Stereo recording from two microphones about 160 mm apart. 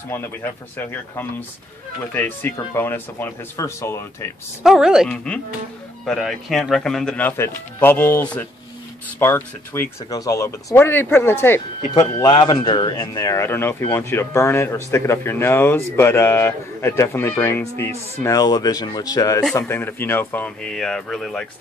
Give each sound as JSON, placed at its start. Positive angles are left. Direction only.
{"t": 0.1, "sound": "speech", "side_deg": 15}
{"t": 4.6, "sound": "speech", "side_deg": -5}
{"t": 5.1, "sound": "speech", "side_deg": 5}
{"t": 11.9, "sound": "speech", "side_deg": 25}
{"t": 19.6, "sound": "speech", "side_deg": 10}